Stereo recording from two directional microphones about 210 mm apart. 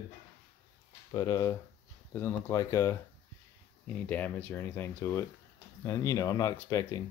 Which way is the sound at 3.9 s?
10° left (ahead or behind).